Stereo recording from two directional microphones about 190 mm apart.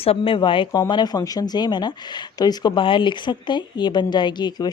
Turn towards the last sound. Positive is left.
turn(degrees=20)  # may be behind; listen again after turning